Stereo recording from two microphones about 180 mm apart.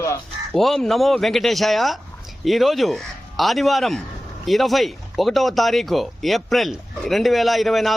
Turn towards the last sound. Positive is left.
turn(degrees=0)  # may be behind; listen again after turning